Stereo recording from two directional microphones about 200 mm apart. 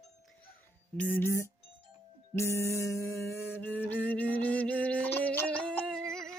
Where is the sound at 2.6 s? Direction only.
15° left (ahead or behind).